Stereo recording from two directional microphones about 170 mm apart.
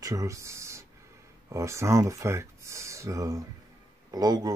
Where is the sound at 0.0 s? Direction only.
20° right (ahead or behind).